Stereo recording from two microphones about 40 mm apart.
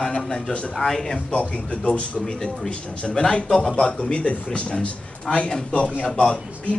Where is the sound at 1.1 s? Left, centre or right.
Left.